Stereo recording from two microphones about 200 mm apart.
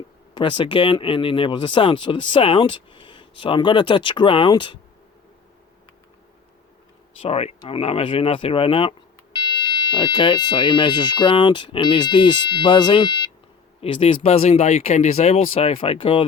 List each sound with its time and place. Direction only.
0.3 s speech: 25° left (ahead or behind)
7.2 s speech: 30° left (ahead or behind)